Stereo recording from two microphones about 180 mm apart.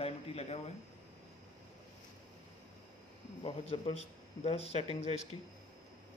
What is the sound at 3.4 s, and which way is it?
A man's voice, 30° left (ahead or behind).